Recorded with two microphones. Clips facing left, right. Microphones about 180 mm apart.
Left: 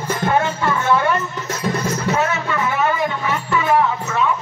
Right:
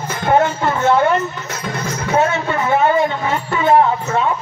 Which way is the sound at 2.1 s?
30° right (ahead or behind).